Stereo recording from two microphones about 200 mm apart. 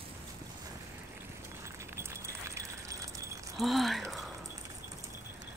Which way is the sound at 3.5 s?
Centre (ahead or behind).